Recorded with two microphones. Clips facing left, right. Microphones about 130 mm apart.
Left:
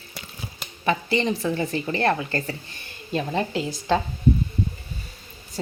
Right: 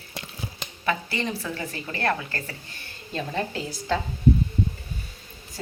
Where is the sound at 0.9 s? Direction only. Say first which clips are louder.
Left 5 dB; 20° left (ahead or behind).